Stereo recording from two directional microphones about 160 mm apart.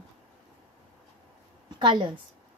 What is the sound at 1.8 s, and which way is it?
Speech, 30° right (ahead or behind).